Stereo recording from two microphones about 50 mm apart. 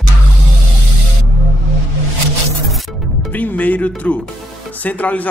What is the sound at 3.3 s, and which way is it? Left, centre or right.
Music, left.